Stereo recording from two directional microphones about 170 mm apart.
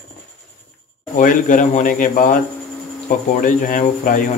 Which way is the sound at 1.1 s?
50° left (ahead or behind).